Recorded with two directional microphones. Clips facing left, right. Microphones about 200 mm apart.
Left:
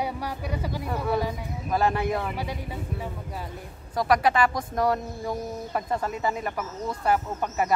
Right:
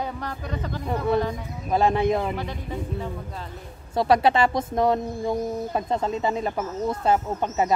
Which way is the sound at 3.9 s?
25° right (ahead or behind).